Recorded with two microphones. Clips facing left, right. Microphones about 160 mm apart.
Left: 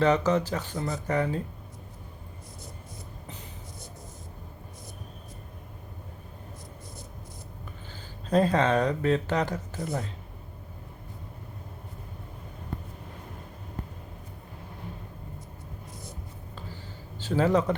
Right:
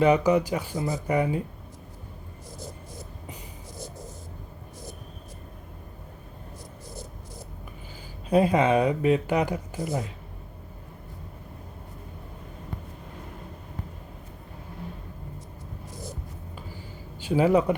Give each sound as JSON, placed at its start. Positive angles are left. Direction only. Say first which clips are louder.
{"t": 0.0, "sound": "speech", "louder": "right 3 dB", "side_deg": -10}
{"t": 8.3, "sound": "speech", "louder": "right 2 dB", "side_deg": -10}
{"t": 17.2, "sound": "a man's voice", "louder": "right 3 dB", "side_deg": -10}